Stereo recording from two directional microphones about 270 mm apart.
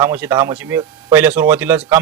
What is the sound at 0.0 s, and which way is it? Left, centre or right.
Speech, centre.